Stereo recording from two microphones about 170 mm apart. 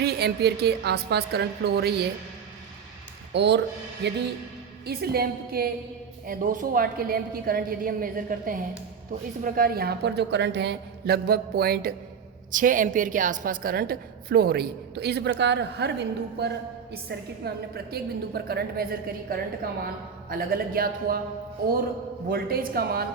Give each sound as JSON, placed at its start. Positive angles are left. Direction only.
{"t": 0.0, "sound": "a woman's voice", "side_deg": -70}
{"t": 3.3, "sound": "speech", "side_deg": -85}
{"t": 4.9, "sound": "a woman's voice", "side_deg": -65}
{"t": 12.5, "sound": "a woman's voice", "side_deg": -50}
{"t": 16.9, "sound": "a woman's voice", "side_deg": -70}
{"t": 22.3, "sound": "a woman's voice", "side_deg": -60}